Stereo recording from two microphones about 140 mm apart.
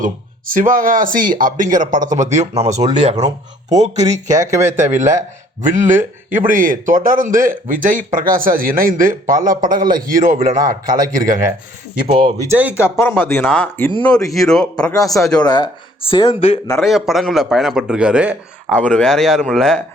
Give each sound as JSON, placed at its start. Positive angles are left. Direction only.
{"t": 0.0, "sound": "a man's voice", "side_deg": -75}
{"t": 4.3, "sound": "speech", "side_deg": -20}
{"t": 4.9, "sound": "a man's voice", "side_deg": -60}
{"t": 10.9, "sound": "speech", "side_deg": -25}
{"t": 12.5, "sound": "speech", "side_deg": -10}
{"t": 12.7, "sound": "speech", "side_deg": 20}
{"t": 14.3, "sound": "a man's voice", "side_deg": 0}
{"t": 15.4, "sound": "speech", "side_deg": 30}
{"t": 16.7, "sound": "a man's voice", "side_deg": 0}
{"t": 18.8, "sound": "a man's voice", "side_deg": 5}